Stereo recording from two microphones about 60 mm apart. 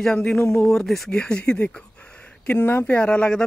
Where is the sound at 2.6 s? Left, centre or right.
Left.